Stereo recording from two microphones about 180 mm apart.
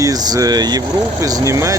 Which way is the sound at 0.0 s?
20° right (ahead or behind).